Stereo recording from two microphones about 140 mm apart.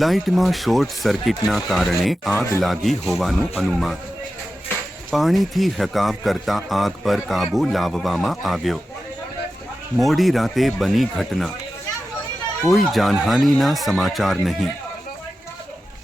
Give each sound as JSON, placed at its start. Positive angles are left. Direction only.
{"t": 0.0, "sound": "speech", "side_deg": 0}
{"t": 2.3, "sound": "speech", "side_deg": 20}
{"t": 2.6, "sound": "speech", "side_deg": 0}
{"t": 5.1, "sound": "speech", "side_deg": 0}
{"t": 10.0, "sound": "speech", "side_deg": 0}
{"t": 12.6, "sound": "speech", "side_deg": 0}